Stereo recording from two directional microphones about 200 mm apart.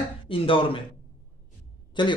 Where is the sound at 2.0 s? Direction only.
25° left (ahead or behind).